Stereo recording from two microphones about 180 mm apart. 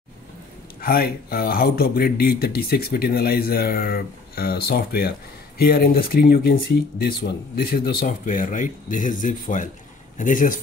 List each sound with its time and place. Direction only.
0.7 s speech: 55° left (ahead or behind)